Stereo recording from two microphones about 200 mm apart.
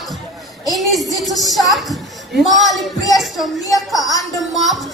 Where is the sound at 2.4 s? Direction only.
Centre (ahead or behind).